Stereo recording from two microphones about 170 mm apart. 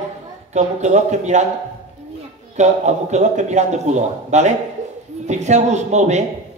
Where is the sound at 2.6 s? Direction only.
45° right (ahead or behind).